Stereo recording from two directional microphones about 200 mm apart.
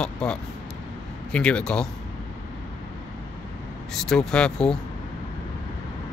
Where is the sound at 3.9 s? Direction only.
5° left (ahead or behind).